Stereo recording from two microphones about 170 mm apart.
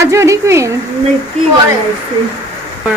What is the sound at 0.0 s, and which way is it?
Speech, 20° right (ahead or behind).